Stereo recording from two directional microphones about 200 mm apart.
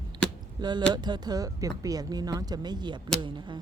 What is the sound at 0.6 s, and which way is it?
Speech, 20° right (ahead or behind).